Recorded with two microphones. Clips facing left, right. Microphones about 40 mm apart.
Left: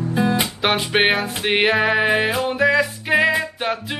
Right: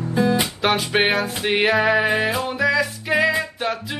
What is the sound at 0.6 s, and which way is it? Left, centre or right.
Music, centre.